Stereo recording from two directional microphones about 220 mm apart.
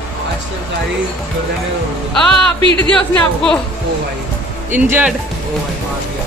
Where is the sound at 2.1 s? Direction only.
5° left (ahead or behind).